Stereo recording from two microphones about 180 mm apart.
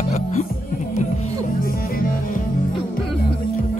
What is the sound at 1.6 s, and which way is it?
Music, 50° left (ahead or behind).